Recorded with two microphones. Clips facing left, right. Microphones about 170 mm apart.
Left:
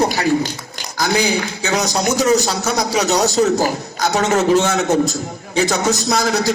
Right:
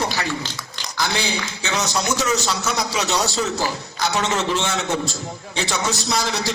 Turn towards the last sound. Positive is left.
turn(degrees=45)  # may be behind; listen again after turning